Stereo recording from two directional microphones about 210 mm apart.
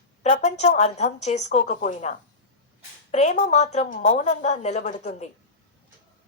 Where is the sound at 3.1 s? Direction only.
35° left (ahead or behind).